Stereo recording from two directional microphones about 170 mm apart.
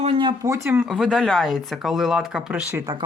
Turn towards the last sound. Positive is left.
turn(degrees=-25)  # may be behind; listen again after turning